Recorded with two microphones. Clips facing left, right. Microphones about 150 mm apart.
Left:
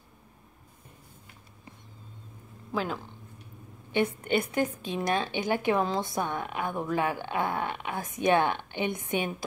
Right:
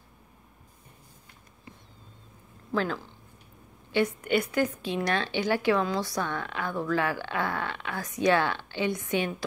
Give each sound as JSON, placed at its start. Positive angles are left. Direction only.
{"t": 2.7, "sound": "speech", "side_deg": 10}
{"t": 3.9, "sound": "a woman's voice", "side_deg": 25}